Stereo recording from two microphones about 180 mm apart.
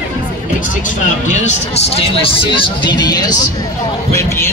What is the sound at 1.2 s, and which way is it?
Speech, 40° left (ahead or behind).